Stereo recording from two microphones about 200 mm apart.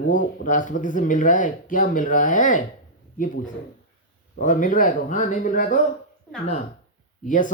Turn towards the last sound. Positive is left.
turn(degrees=40)  # may be behind; listen again after turning